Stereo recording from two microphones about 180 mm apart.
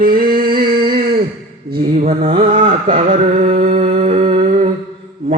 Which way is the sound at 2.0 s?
40° right (ahead or behind).